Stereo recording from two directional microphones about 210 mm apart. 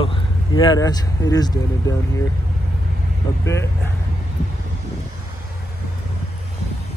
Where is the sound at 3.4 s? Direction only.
15° left (ahead or behind).